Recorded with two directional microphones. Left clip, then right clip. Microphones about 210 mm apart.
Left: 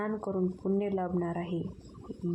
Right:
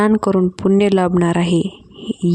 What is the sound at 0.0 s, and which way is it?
Speech, 55° right (ahead or behind).